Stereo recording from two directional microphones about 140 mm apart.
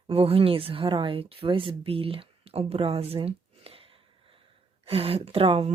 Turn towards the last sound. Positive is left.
turn(degrees=-45)  # may be behind; listen again after turning